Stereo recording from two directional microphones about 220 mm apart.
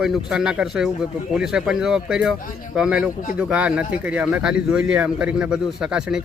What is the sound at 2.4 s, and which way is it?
Speech, 35° left (ahead or behind).